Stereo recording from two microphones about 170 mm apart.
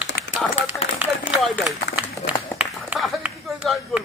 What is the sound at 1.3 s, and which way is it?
Speech, centre (ahead or behind).